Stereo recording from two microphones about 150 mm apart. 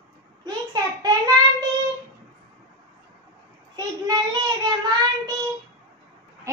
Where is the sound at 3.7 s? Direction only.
25° right (ahead or behind).